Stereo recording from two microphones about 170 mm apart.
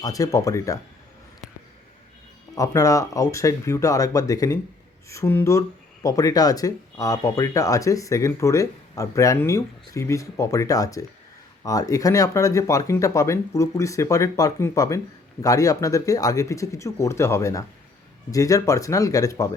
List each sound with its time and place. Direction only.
0.0 s speech: 20° left (ahead or behind)
2.6 s speech: 20° left (ahead or behind)